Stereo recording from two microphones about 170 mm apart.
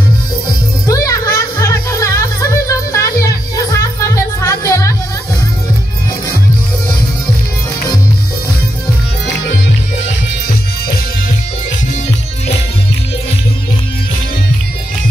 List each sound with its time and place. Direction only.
0.8 s music: 20° left (ahead or behind)